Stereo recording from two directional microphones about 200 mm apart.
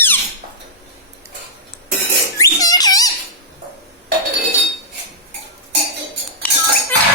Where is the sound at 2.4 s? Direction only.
20° left (ahead or behind).